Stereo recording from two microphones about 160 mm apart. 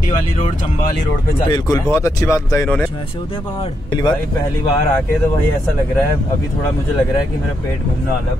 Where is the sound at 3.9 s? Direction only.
25° left (ahead or behind).